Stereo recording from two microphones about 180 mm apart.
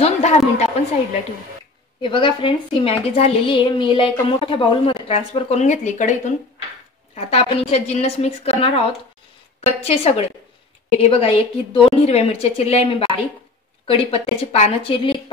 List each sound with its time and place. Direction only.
0.0 s a sound: 40° left (ahead or behind)
2.0 s a woman's voice: 25° left (ahead or behind)
9.8 s a woman's voice: 35° left (ahead or behind)